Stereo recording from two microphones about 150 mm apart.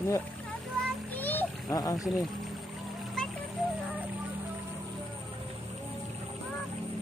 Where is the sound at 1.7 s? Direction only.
25° left (ahead or behind).